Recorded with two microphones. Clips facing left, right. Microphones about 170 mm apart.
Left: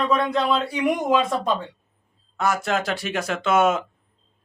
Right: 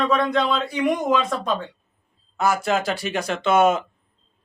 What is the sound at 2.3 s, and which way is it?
Speech, centre (ahead or behind).